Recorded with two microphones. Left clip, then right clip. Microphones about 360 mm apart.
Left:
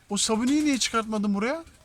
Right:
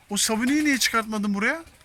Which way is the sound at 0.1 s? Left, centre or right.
Centre.